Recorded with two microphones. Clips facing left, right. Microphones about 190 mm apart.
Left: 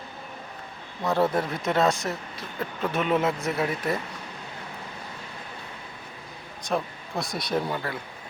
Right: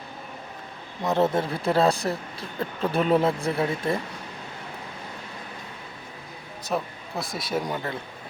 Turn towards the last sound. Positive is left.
turn(degrees=-20)  # may be behind; listen again after turning